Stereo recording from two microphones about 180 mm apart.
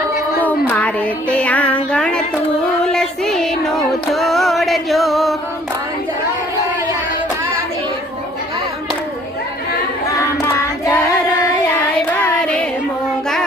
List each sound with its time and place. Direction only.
0.4 s music: 10° left (ahead or behind)
10.2 s singing: 15° left (ahead or behind)
11.9 s child singing: 10° left (ahead or behind)